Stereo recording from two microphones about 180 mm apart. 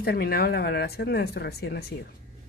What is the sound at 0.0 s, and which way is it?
Speech, 60° left (ahead or behind).